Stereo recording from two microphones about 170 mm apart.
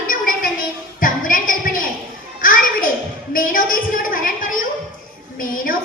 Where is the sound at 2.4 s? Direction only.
55° left (ahead or behind).